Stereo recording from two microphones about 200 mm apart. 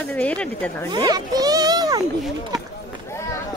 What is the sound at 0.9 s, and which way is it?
A child's voice, 20° right (ahead or behind).